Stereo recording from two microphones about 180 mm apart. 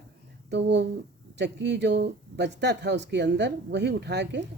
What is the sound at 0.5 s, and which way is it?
Speech, 70° right (ahead or behind).